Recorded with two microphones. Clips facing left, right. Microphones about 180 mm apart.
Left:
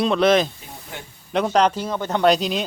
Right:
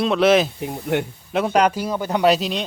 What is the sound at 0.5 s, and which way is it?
Speech, 65° right (ahead or behind).